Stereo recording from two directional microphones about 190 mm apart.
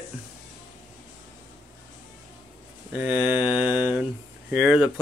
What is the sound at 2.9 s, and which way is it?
Speech, 10° right (ahead or behind).